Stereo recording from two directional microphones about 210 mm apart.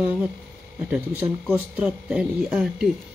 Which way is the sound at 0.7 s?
5° right (ahead or behind).